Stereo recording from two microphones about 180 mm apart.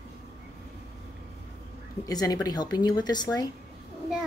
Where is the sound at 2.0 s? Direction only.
20° left (ahead or behind).